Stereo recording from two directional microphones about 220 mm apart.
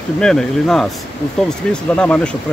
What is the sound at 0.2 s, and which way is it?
Speech, centre (ahead or behind).